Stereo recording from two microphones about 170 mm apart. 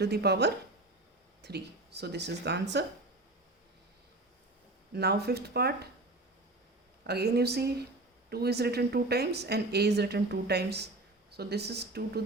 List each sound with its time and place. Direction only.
0.0 s a woman's voice: 70° right (ahead or behind)
4.9 s a woman's voice: 70° right (ahead or behind)
7.1 s a woman's voice: 70° right (ahead or behind)